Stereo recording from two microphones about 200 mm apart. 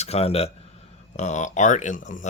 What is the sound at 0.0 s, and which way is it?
A man's voice, 30° left (ahead or behind).